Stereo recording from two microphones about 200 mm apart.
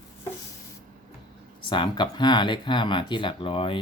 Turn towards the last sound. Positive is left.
turn(degrees=25)  # may be behind; listen again after turning